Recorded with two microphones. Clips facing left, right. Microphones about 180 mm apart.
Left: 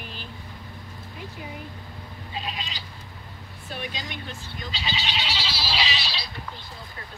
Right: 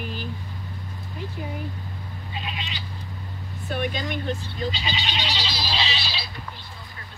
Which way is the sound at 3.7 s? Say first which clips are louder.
Right 8 dB; 55° right (ahead or behind).